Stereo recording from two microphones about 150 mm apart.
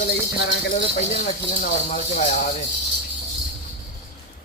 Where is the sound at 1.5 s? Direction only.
50° left (ahead or behind).